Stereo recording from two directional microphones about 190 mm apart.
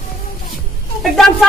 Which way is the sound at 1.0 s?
Centre (ahead or behind).